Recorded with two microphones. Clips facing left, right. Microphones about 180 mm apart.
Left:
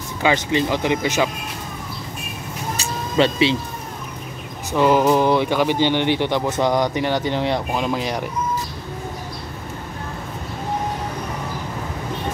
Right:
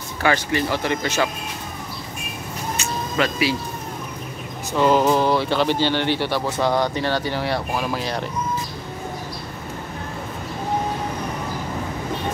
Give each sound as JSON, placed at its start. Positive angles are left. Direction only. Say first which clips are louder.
{"t": 0.2, "sound": "speech", "louder": "left 2 dB", "side_deg": 20}
{"t": 2.8, "sound": "vehicle", "louder": "left 5 dB", "side_deg": 25}
{"t": 4.7, "sound": "speech", "louder": "left 1 dB", "side_deg": 15}